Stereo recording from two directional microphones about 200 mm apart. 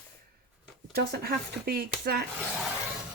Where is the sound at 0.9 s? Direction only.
50° right (ahead or behind).